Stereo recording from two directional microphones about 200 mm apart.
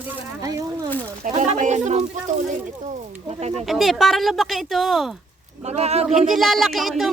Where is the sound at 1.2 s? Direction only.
40° right (ahead or behind).